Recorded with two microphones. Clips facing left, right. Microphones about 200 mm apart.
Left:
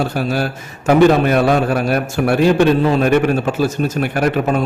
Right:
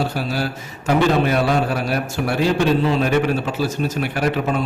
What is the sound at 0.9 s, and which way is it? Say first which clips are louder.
A man's voice: left 6 dB; 55° left (ahead or behind).